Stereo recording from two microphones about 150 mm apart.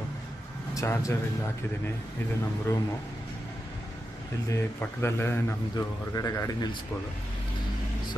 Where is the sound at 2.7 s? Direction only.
20° left (ahead or behind).